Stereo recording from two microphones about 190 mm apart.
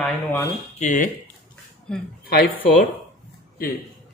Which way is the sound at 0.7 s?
40° left (ahead or behind).